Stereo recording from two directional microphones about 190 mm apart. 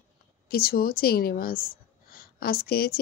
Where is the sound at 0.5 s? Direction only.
50° left (ahead or behind).